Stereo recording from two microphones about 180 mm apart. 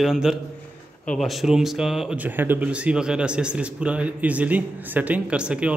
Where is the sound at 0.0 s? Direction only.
Centre (ahead or behind).